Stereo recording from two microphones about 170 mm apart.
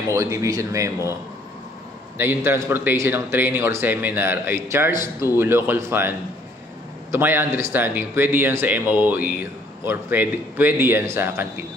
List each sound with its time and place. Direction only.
0.1 s speech: 15° right (ahead or behind)
2.1 s speech: 15° right (ahead or behind)